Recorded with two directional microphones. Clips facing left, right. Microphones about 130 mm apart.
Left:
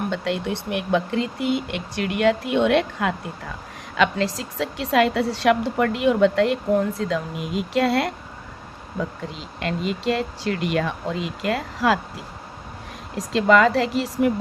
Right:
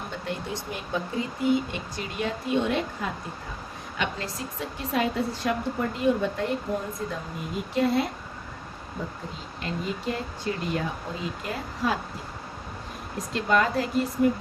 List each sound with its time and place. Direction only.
0.1 s speech: 85° left
3.9 s a woman's voice: 90° left
9.6 s a woman's voice: 90° left
13.1 s speech: 90° left